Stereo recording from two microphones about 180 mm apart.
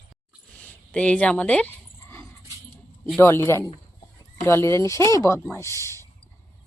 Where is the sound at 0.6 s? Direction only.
5° left (ahead or behind).